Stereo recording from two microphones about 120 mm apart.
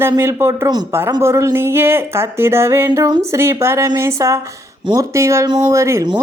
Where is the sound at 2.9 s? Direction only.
35° right (ahead or behind).